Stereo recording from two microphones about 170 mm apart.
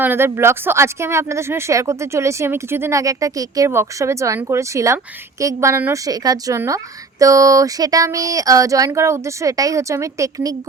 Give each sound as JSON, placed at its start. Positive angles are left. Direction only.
{"t": 0.0, "sound": "speech", "side_deg": -15}